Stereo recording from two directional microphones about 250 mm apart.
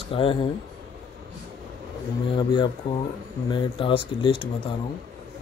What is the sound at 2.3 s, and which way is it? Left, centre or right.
Speech, centre.